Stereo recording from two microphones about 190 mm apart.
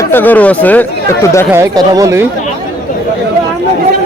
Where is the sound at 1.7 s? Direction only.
20° right (ahead or behind).